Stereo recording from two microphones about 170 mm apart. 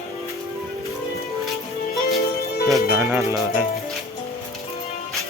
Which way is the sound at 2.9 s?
15° right (ahead or behind).